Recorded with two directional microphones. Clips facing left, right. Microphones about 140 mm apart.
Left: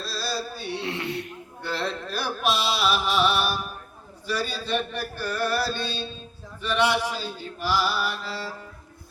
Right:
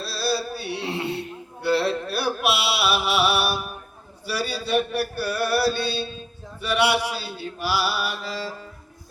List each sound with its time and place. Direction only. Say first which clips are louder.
0.0 s music: right 5 dB; 5° right (ahead or behind)
0.9 s speech: right 4 dB; 30° right (ahead or behind)
1.6 s a sound: right 8 dB; 10° right (ahead or behind)
4.3 s mantra: right 2 dB; 10° right (ahead or behind)